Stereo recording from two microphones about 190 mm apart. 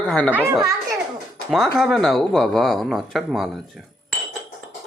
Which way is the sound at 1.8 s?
Centre (ahead or behind).